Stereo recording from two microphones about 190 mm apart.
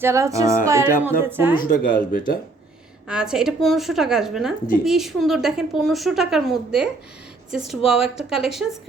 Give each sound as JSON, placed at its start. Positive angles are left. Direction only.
{"t": 0.0, "sound": "music", "side_deg": -15}
{"t": 1.5, "sound": "speech", "side_deg": 50}
{"t": 3.1, "sound": "a woman's voice", "side_deg": -5}